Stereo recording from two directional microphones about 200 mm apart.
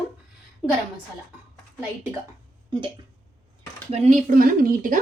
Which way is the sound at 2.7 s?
25° right (ahead or behind).